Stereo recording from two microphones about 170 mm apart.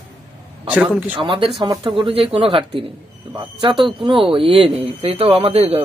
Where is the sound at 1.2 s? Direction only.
30° right (ahead or behind).